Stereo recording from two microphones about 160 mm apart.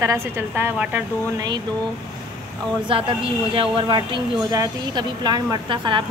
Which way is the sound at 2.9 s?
35° right (ahead or behind).